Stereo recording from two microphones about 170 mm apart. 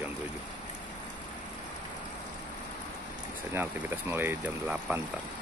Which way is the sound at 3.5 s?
10° right (ahead or behind).